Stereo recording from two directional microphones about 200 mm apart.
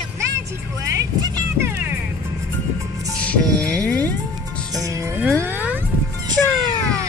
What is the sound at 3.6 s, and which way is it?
Music, 5° left (ahead or behind).